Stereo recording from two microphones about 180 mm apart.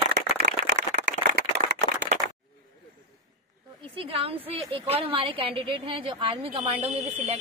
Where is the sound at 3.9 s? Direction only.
30° right (ahead or behind).